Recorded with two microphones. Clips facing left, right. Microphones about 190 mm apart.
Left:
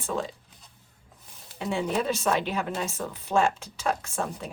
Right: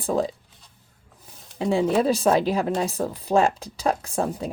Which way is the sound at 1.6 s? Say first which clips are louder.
Right 7 dB; 35° right (ahead or behind).